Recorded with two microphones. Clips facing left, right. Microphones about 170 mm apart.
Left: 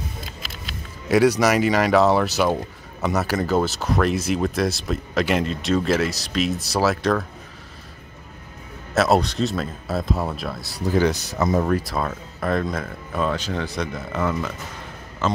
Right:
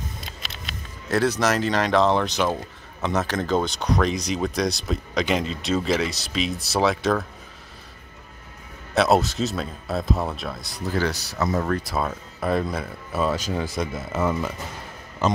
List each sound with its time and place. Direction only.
0.4 s a sound: centre (ahead or behind)
1.0 s speech: 10° left (ahead or behind)
8.9 s speech: centre (ahead or behind)
11.0 s speech: 20° left (ahead or behind)
11.8 s speech: centre (ahead or behind)